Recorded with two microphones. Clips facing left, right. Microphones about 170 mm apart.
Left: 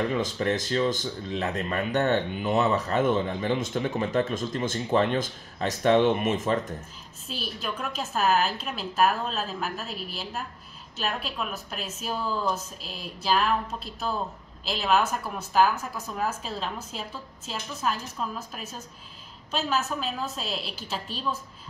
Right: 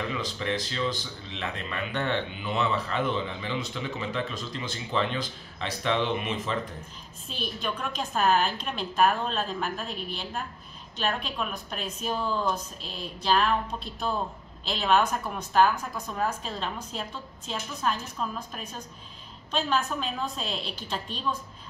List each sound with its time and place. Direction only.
0.1 s speech: 45° left (ahead or behind)
7.2 s a woman's voice: 5° left (ahead or behind)